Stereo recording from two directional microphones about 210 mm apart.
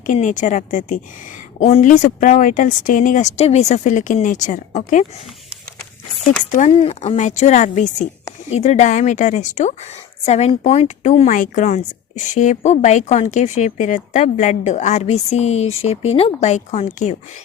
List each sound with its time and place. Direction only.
0.0 s a woman's voice: 35° left (ahead or behind)
6.5 s a woman's voice: 30° left (ahead or behind)